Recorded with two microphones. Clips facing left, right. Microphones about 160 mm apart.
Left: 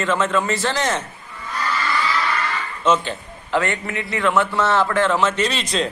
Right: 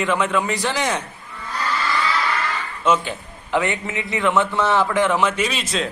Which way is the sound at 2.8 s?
10° right (ahead or behind).